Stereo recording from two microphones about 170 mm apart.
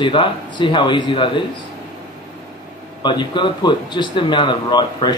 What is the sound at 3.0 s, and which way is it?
Speech, 25° left (ahead or behind).